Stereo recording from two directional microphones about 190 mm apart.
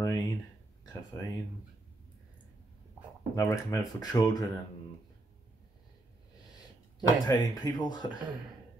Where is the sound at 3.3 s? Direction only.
15° left (ahead or behind).